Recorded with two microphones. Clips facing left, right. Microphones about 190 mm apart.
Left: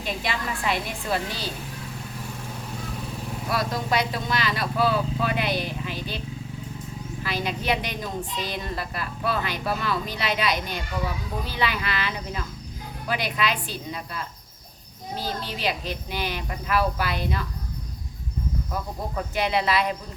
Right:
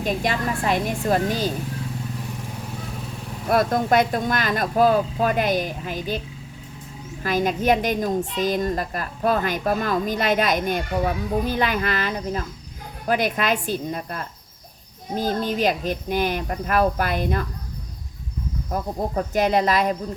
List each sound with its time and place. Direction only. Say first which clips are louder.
0.0 s a woman's voice: right 6 dB; 45° right (ahead or behind)
3.5 s a woman's voice: right 7 dB; 50° right (ahead or behind)
18.7 s a woman's voice: right 8 dB; 45° right (ahead or behind)